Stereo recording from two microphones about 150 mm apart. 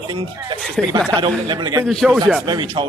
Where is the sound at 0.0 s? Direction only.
30° right (ahead or behind).